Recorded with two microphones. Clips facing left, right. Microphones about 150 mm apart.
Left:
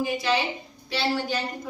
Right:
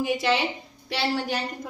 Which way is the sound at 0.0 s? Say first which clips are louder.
Right 1 dB; 75° right (ahead or behind).